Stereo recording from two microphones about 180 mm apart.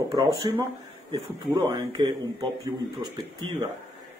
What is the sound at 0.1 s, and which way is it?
Speech, 25° right (ahead or behind).